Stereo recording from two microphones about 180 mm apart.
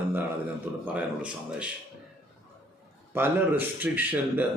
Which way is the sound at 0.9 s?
5° right (ahead or behind).